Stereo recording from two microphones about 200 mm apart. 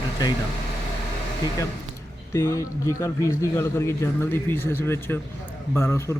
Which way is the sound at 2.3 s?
15° left (ahead or behind).